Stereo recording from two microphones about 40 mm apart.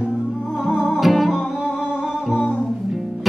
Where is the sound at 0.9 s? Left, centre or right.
Centre.